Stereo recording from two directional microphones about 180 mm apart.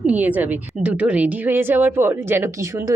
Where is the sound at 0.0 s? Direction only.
10° right (ahead or behind).